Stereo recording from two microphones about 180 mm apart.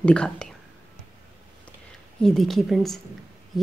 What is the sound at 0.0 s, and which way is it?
Speech, 5° left (ahead or behind).